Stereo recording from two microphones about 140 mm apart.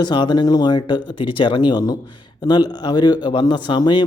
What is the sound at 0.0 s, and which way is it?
Speech, 30° left (ahead or behind).